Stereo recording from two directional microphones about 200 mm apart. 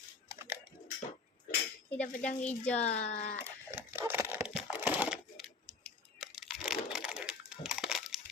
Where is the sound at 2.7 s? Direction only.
35° left (ahead or behind).